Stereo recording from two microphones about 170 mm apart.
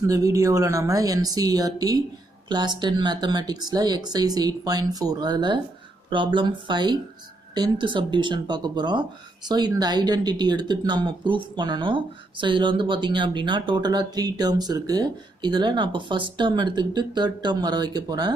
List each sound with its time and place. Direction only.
0.0 s speech: 20° right (ahead or behind)